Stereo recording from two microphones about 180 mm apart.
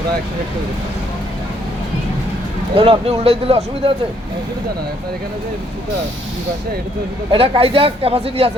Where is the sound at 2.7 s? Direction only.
30° right (ahead or behind).